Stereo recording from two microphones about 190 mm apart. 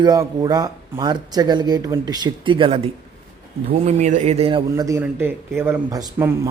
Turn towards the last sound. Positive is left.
turn(degrees=-15)  # may be behind; listen again after turning